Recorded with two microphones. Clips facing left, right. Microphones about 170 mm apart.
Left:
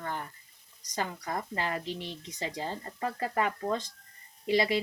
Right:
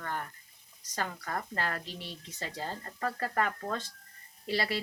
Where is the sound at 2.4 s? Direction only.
15° left (ahead or behind).